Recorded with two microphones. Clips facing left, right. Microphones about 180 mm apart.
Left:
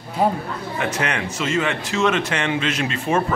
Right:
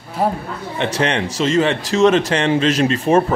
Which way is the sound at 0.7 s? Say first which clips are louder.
Right 5 dB; 35° right (ahead or behind).